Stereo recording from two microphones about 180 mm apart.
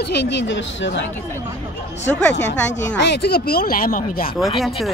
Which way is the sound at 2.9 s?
70° left (ahead or behind).